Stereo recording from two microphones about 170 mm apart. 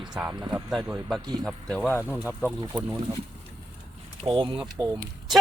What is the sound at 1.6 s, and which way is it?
Speech, 5° left (ahead or behind).